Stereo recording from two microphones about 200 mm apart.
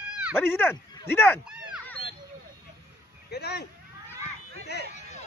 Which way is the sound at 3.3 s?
55° left (ahead or behind).